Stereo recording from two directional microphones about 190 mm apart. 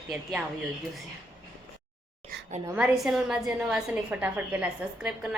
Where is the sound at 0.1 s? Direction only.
5° right (ahead or behind).